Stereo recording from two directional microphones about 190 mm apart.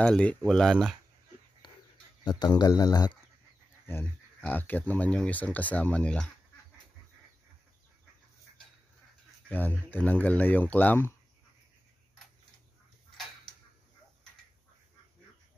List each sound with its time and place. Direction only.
0.0 s speech: 5° left (ahead or behind)
1.6 s dog: 25° left (ahead or behind)
2.2 s speech: 20° left (ahead or behind); by 6.2 s 5° left (ahead or behind)
9.5 s speech: 10° left (ahead or behind)